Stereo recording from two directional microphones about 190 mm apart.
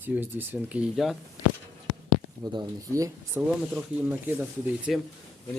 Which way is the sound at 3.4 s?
5° right (ahead or behind).